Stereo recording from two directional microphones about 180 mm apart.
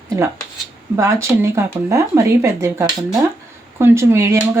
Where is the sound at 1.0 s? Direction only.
15° right (ahead or behind).